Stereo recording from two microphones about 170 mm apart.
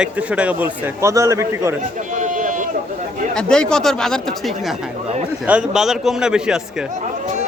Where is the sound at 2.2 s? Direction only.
50° right (ahead or behind).